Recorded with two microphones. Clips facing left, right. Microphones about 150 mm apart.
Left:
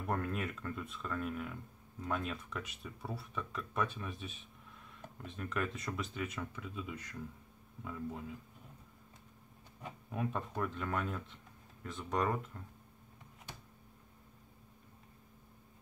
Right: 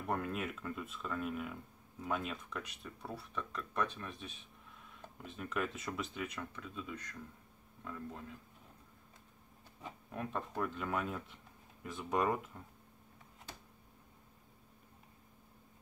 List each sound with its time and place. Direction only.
0.0 s speech: centre (ahead or behind)
10.1 s speech: 5° left (ahead or behind)